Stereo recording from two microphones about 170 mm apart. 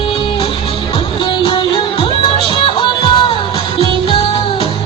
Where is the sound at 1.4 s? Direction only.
30° left (ahead or behind).